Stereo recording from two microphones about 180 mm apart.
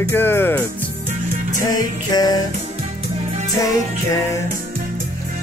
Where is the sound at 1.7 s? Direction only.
20° left (ahead or behind).